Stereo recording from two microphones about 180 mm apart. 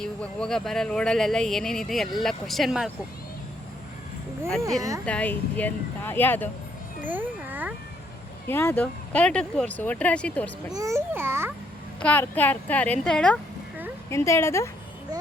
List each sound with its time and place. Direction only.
0.0 s speech: 5° left (ahead or behind)
5.0 s speech: 10° left (ahead or behind)
7.0 s a sound: 10° right (ahead or behind)
8.4 s speech: 10° left (ahead or behind)
10.8 s a child's voice: 15° right (ahead or behind)
11.9 s speech: 10° left (ahead or behind)
14.1 s speech: 15° left (ahead or behind)